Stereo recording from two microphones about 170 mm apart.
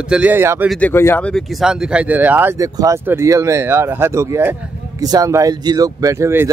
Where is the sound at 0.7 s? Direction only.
10° left (ahead or behind).